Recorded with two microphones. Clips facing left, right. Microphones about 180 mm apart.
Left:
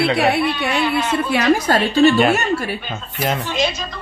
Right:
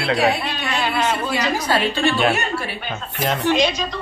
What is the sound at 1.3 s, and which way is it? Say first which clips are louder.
A woman's voice: left 5 dB; 50° left (ahead or behind).